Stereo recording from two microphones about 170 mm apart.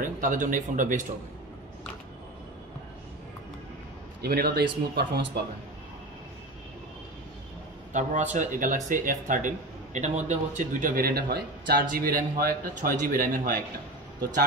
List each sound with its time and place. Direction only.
0.0 s speech: 50° right (ahead or behind)
4.2 s speech: 65° right (ahead or behind)
7.9 s a man's voice: 45° right (ahead or behind); by 11.8 s 65° right (ahead or behind)
11.8 s a man's voice: 55° right (ahead or behind)